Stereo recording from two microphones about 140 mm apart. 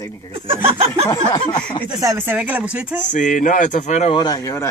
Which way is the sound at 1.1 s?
25° left (ahead or behind).